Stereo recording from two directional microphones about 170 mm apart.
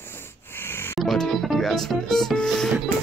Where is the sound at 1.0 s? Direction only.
Centre (ahead or behind).